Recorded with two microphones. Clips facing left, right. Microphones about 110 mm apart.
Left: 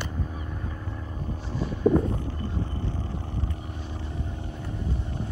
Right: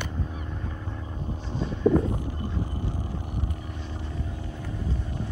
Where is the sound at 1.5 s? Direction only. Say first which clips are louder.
Even; 20° right (ahead or behind).